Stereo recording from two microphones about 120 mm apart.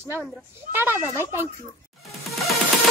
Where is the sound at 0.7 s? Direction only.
15° right (ahead or behind).